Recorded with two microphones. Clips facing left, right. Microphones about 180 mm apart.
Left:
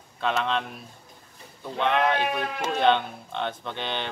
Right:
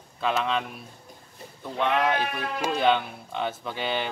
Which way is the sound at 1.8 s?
5° right (ahead or behind).